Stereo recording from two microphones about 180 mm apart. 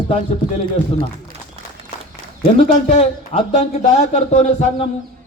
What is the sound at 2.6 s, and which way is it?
Speech, 40° left (ahead or behind).